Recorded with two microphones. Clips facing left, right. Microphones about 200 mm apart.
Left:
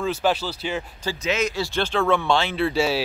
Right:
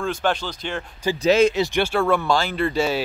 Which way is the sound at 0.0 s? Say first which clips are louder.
Left 1 dB; 5° left (ahead or behind).